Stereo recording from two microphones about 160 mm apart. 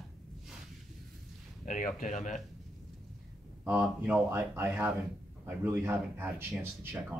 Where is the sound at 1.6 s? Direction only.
50° left (ahead or behind).